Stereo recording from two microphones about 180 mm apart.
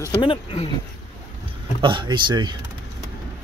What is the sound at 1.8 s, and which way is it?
Speech, 25° right (ahead or behind).